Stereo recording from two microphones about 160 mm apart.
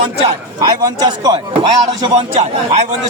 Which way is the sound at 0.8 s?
25° right (ahead or behind).